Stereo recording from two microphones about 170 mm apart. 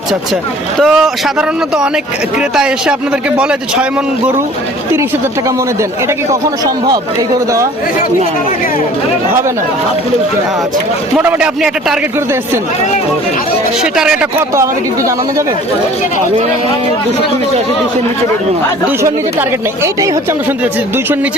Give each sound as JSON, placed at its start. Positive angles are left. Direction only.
{"t": 0.8, "sound": "speech", "side_deg": 0}
{"t": 11.2, "sound": "a woman's voice", "side_deg": -5}
{"t": 13.9, "sound": "speech", "side_deg": -5}
{"t": 14.5, "sound": "a woman's voice", "side_deg": -20}
{"t": 19.0, "sound": "a woman's voice", "side_deg": -15}